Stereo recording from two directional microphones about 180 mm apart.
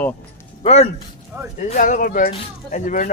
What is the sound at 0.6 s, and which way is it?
Speech, 35° left (ahead or behind).